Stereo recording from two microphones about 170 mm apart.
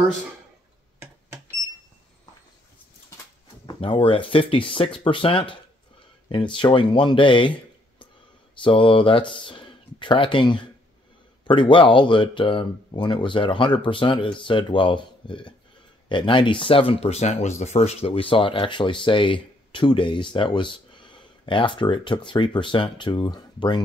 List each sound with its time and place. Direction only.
3.6 s speech: 30° left (ahead or behind)
8.6 s speech: 30° left (ahead or behind)